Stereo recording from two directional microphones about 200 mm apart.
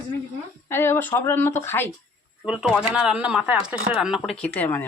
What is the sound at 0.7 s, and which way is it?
Speech, 10° left (ahead or behind).